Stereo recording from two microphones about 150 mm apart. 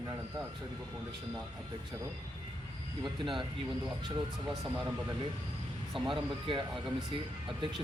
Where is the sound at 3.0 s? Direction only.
35° right (ahead or behind).